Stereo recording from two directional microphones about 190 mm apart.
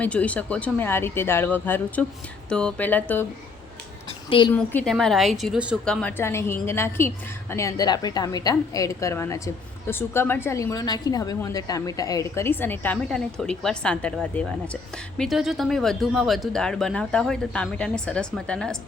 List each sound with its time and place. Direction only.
0.0 s a woman's voice: 5° left (ahead or behind)
4.3 s a woman's voice: 25° left (ahead or behind)
4.5 s a woman's voice: 5° left (ahead or behind)